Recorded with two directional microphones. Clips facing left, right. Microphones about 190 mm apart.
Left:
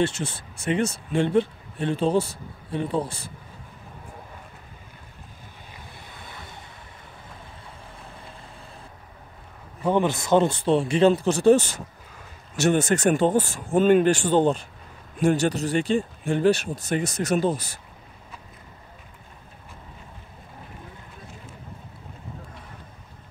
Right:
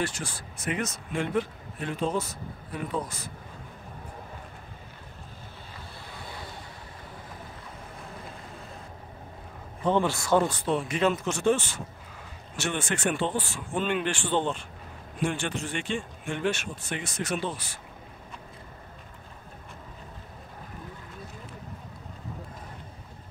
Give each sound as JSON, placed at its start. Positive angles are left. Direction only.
{"t": 0.0, "sound": "speech", "side_deg": 25}
{"t": 6.1, "sound": "vehicle", "side_deg": 20}
{"t": 9.8, "sound": "speech", "side_deg": 15}